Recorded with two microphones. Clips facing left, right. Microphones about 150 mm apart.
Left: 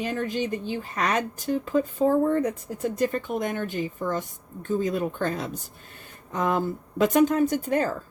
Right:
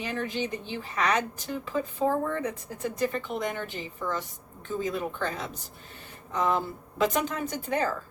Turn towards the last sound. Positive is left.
turn(degrees=45)  # may be behind; listen again after turning